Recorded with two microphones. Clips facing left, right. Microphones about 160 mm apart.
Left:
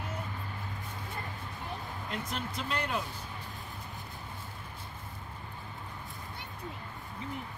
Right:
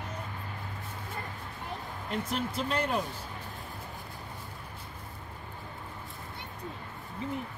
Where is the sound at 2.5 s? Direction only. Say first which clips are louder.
Right 3 dB; 35° right (ahead or behind).